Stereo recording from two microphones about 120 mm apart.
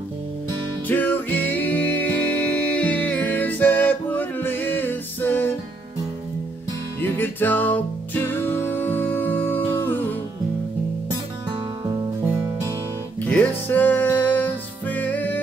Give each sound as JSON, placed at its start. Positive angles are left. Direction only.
{"t": 0.8, "sound": "music", "side_deg": 15}
{"t": 7.0, "sound": "music", "side_deg": 15}
{"t": 13.2, "sound": "music", "side_deg": 15}